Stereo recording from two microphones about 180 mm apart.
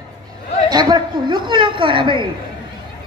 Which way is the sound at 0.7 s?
25° right (ahead or behind).